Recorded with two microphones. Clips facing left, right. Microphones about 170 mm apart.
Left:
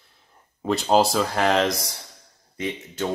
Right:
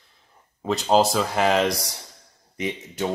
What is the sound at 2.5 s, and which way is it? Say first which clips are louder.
Speech: right 1 dB; 15° right (ahead or behind).